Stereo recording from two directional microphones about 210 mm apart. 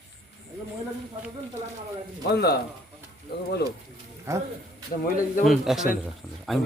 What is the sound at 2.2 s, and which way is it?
Speech, 50° left (ahead or behind).